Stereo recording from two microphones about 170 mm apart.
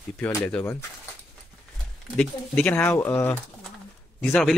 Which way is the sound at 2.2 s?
10° left (ahead or behind).